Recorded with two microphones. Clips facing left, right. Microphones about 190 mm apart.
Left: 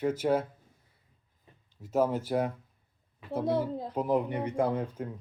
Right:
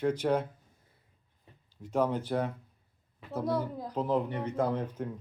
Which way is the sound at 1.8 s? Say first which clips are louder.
Left 2 dB; 5° left (ahead or behind).